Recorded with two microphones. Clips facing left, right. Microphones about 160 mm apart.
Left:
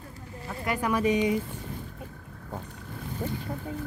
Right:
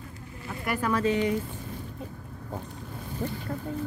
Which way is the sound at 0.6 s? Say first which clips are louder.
Even; 15° left (ahead or behind).